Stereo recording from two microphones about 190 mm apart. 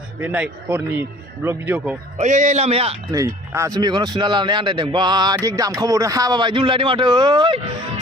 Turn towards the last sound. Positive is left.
turn(degrees=-25)  # may be behind; listen again after turning